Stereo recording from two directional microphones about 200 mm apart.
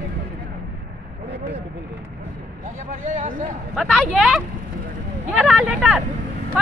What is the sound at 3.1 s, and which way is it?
Speech, 40° right (ahead or behind).